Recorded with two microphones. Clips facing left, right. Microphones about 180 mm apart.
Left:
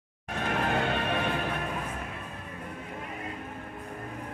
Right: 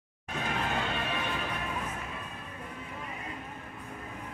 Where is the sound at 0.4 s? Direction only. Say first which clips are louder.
Left 4 dB; 55° left (ahead or behind).